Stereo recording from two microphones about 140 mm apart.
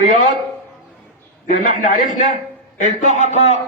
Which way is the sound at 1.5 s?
65° left (ahead or behind).